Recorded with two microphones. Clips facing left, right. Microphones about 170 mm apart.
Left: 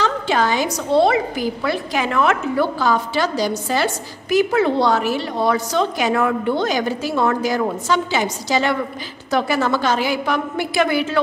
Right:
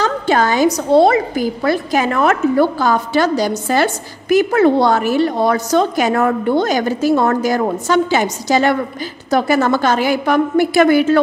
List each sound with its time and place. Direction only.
0.0 s a woman's voice: 45° right (ahead or behind)